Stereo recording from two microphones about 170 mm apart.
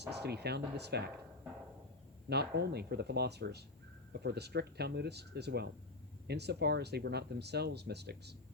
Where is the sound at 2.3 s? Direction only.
75° right (ahead or behind).